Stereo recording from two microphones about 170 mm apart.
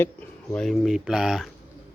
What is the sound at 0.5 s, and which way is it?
Speech, centre (ahead or behind).